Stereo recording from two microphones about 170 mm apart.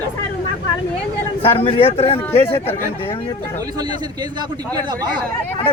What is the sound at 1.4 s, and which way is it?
A man's voice, 35° left (ahead or behind).